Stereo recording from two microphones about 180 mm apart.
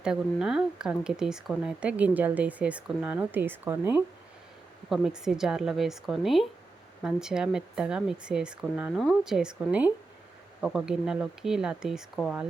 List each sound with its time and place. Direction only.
0.0 s speech: 5° right (ahead or behind)